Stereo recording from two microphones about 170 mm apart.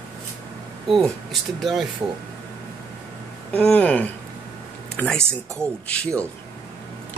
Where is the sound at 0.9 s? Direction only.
Centre (ahead or behind).